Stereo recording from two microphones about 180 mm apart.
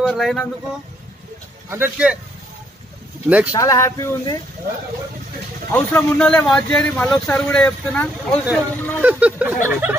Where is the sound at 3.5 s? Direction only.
20° left (ahead or behind).